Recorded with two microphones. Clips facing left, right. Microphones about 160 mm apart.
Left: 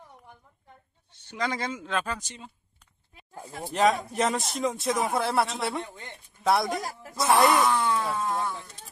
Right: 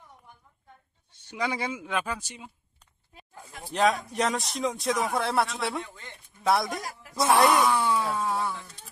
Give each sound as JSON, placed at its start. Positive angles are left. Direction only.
{"t": 1.3, "sound": "speech", "side_deg": -10}
{"t": 3.3, "sound": "speech", "side_deg": 40}
{"t": 3.7, "sound": "speech", "side_deg": 0}
{"t": 5.8, "sound": "speech", "side_deg": 20}
{"t": 6.4, "sound": "speech", "side_deg": 0}